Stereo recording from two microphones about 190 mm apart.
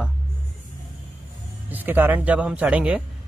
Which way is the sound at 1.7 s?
10° right (ahead or behind).